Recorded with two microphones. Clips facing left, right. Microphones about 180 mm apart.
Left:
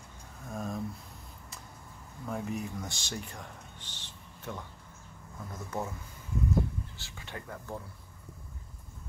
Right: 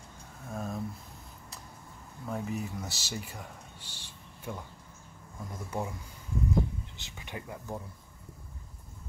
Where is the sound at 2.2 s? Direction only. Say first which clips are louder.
Even; centre (ahead or behind).